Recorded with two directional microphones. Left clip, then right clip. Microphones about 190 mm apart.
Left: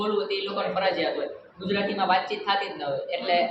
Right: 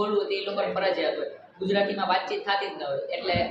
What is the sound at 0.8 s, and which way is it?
Speech, 10° left (ahead or behind).